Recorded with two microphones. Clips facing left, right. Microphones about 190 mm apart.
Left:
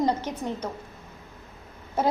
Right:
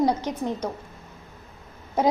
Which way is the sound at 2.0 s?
15° right (ahead or behind).